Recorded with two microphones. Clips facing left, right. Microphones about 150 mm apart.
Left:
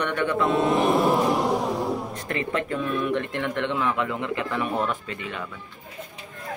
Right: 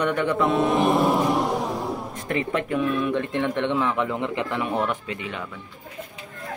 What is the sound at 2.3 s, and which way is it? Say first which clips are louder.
Speech: right 3 dB; 15° right (ahead or behind).